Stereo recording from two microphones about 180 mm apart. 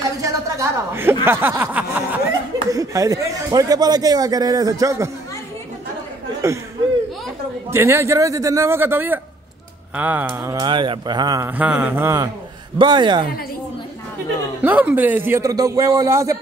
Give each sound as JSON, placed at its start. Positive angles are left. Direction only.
{"t": 0.2, "sound": "a sound", "side_deg": -15}
{"t": 2.7, "sound": "a man's voice", "side_deg": -20}
{"t": 7.7, "sound": "speech", "side_deg": -15}
{"t": 12.7, "sound": "a man's voice", "side_deg": -25}
{"t": 14.6, "sound": "speech", "side_deg": -10}